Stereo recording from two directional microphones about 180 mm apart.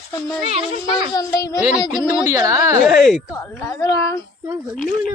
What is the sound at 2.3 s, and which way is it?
Speech, 15° right (ahead or behind).